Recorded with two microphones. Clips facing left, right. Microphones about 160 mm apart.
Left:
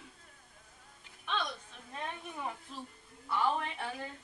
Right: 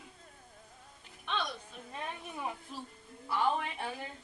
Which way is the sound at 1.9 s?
5° right (ahead or behind).